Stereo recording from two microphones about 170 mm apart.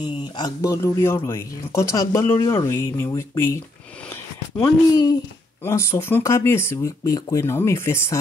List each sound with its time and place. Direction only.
0.0 s speech: 25° left (ahead or behind)
4.1 s a sound: 15° left (ahead or behind)
5.6 s speech: 15° left (ahead or behind)